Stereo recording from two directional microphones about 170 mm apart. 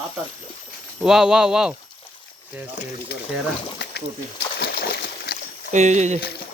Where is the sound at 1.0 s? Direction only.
5° right (ahead or behind).